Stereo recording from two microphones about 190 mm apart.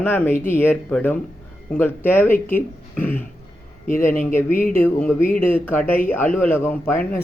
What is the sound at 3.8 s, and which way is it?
Speech, 45° left (ahead or behind).